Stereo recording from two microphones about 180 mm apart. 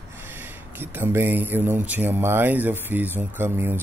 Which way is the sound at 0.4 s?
10° right (ahead or behind).